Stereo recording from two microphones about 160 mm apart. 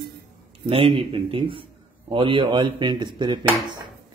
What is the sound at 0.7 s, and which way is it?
A man's voice, 35° right (ahead or behind).